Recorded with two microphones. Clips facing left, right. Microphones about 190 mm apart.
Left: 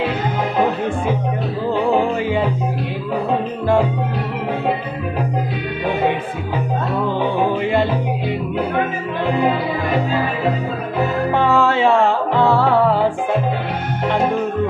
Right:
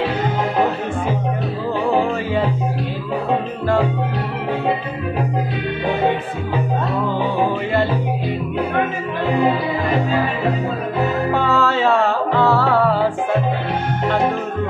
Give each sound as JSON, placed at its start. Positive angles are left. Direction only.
{"t": 11.3, "sound": "music", "side_deg": 15}